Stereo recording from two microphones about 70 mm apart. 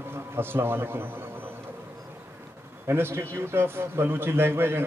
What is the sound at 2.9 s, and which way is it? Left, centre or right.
A man's voice, right.